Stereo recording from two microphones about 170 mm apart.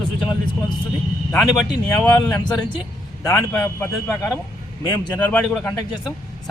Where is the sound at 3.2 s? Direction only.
15° left (ahead or behind).